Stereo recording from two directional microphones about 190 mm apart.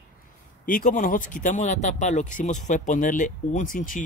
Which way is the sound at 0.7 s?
45° left (ahead or behind).